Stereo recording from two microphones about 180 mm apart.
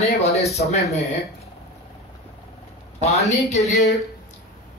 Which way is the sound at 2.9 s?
40° left (ahead or behind).